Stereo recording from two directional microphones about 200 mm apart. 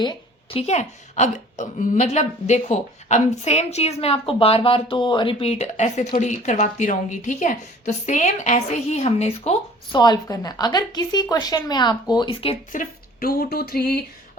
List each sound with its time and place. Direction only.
0.0 s a sound: 20° left (ahead or behind)
0.6 s a woman's voice: 35° left (ahead or behind)
10.0 s a woman's voice: 20° left (ahead or behind)
12.7 s speech: 45° left (ahead or behind)